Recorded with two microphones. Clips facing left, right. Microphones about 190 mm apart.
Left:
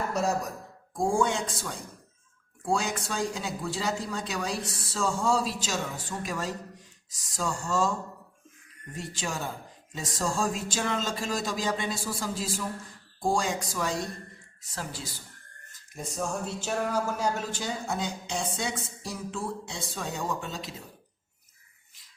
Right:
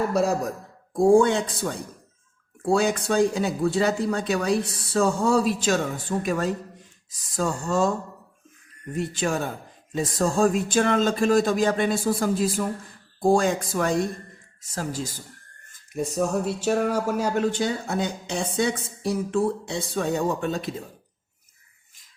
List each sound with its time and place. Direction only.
0.9 s speech: 65° right (ahead or behind)
9.0 s speech: 60° right (ahead or behind)
14.6 s speech: 45° right (ahead or behind)
15.7 s speech: 65° right (ahead or behind)